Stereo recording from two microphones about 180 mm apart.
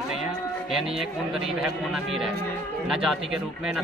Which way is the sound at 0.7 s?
Centre (ahead or behind).